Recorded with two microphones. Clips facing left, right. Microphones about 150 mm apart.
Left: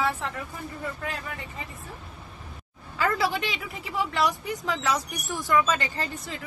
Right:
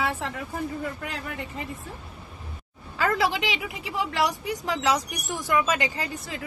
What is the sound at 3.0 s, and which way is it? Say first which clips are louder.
Speech: right 1 dB; 15° right (ahead or behind).